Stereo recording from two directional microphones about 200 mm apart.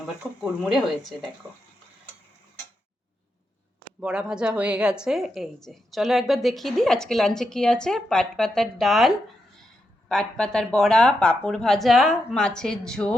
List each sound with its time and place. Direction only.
0.2 s a woman's voice: 5° right (ahead or behind)
4.0 s a woman's voice: 5° right (ahead or behind)